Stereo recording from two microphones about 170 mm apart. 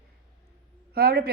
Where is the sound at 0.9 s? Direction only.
65° right (ahead or behind).